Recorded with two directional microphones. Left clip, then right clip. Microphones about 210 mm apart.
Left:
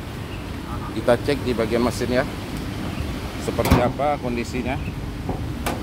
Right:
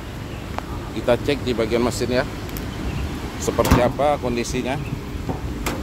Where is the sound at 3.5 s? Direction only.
15° right (ahead or behind).